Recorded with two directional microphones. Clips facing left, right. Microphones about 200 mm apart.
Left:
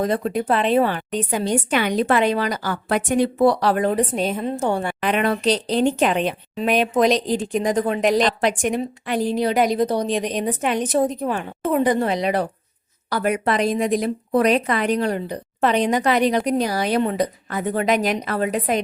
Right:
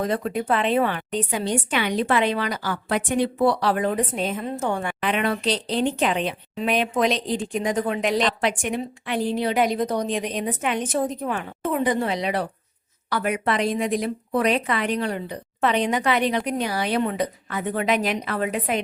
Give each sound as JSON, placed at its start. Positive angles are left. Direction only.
{"t": 0.1, "sound": "a woman's voice", "side_deg": 35}